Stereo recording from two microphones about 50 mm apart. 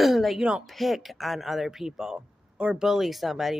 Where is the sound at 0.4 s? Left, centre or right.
Right.